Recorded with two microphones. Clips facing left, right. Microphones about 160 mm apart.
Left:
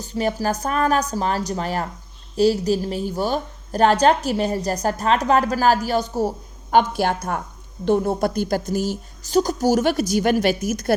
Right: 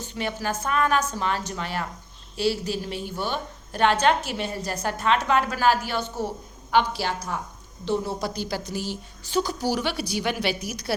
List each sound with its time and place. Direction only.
0.0 s a woman's voice: 40° left (ahead or behind)